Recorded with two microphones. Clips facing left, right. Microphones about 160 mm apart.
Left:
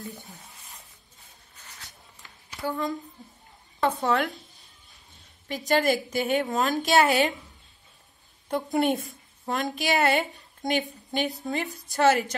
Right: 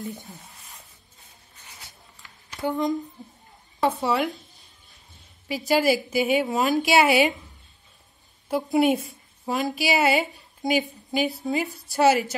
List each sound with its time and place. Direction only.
1.6 s a sound: 10° right (ahead or behind)
2.6 s speech: 20° right (ahead or behind)
3.8 s a woman's voice: 5° right (ahead or behind)
5.7 s a woman's voice: 5° right (ahead or behind)
8.5 s a woman's voice: 5° right (ahead or behind)